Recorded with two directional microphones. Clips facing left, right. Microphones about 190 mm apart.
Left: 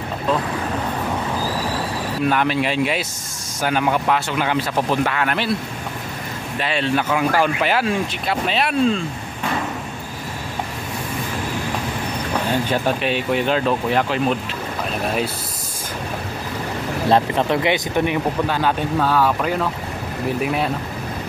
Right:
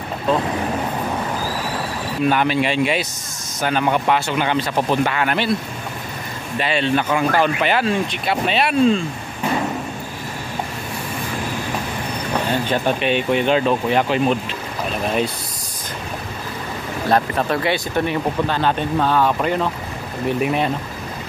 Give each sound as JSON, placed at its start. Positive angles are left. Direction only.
{"t": 2.2, "sound": "speech", "side_deg": 0}
{"t": 6.6, "sound": "speech", "side_deg": 0}
{"t": 12.6, "sound": "speech", "side_deg": 5}
{"t": 17.1, "sound": "speech", "side_deg": 20}